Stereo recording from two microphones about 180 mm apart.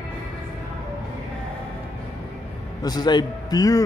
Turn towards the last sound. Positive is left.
turn(degrees=20)  # may be behind; listen again after turning